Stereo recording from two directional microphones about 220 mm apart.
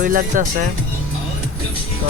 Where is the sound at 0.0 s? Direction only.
40° right (ahead or behind).